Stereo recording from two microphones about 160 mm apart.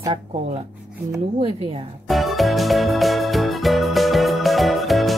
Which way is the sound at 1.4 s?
35° right (ahead or behind).